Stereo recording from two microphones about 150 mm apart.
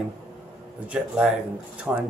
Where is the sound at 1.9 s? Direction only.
10° right (ahead or behind).